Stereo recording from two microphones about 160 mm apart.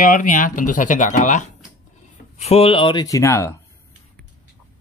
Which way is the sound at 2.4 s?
40° left (ahead or behind).